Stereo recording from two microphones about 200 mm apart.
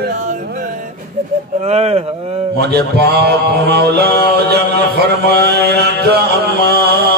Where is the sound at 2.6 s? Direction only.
55° right (ahead or behind).